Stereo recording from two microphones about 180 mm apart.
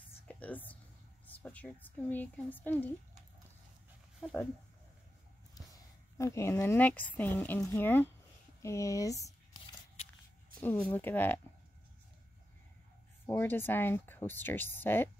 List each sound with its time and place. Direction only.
0.4 s a sound: 10° left (ahead or behind)
1.2 s a woman's voice: 10° left (ahead or behind)
6.1 s speech: 15° left (ahead or behind)
10.6 s speech: 10° left (ahead or behind)
13.3 s speech: 10° left (ahead or behind)